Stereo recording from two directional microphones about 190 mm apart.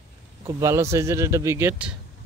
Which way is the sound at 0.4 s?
15° right (ahead or behind).